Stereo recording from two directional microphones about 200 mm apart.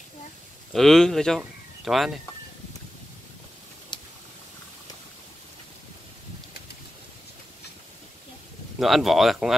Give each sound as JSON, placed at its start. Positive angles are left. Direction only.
{"t": 0.7, "sound": "speech", "side_deg": 0}
{"t": 3.9, "sound": "a sound", "side_deg": 20}
{"t": 8.7, "sound": "speech", "side_deg": 0}